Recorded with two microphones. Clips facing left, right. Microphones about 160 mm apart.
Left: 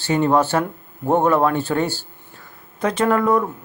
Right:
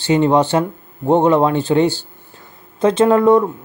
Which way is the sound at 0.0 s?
20° right (ahead or behind).